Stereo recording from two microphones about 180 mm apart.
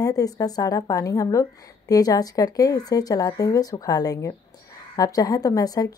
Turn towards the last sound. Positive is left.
turn(degrees=20)  # may be behind; listen again after turning